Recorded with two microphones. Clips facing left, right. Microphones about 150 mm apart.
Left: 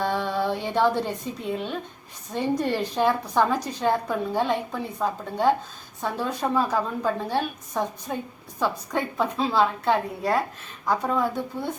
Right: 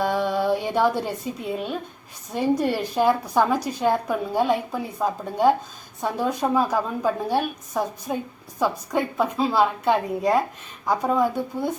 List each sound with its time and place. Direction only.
0.0 s a woman's voice: 10° right (ahead or behind)